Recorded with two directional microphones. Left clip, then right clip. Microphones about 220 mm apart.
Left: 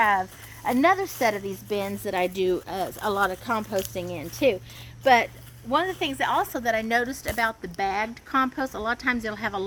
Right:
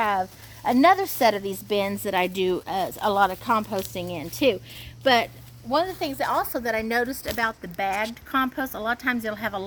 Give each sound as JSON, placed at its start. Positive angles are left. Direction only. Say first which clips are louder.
{"t": 0.0, "sound": "speech", "louder": "left 2 dB", "side_deg": -55}
{"t": 6.1, "sound": "a woman's voice", "louder": "right 1 dB", "side_deg": -35}
{"t": 8.7, "sound": "speech", "louder": "right 1 dB", "side_deg": -50}
{"t": 9.1, "sound": "a woman's voice", "louder": "even", "side_deg": -35}